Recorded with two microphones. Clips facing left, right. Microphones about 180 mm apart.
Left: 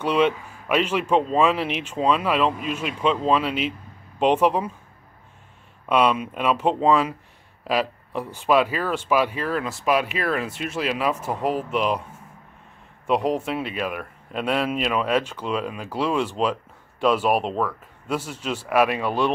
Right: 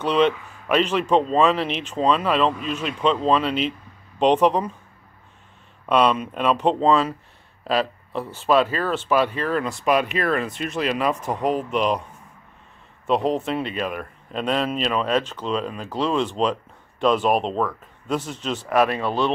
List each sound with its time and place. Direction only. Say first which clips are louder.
0.0 s speech: right 1 dB; 10° left (ahead or behind)
5.9 s speech: right 1 dB; 10° left (ahead or behind)
13.0 s speech: right 1 dB; 10° left (ahead or behind)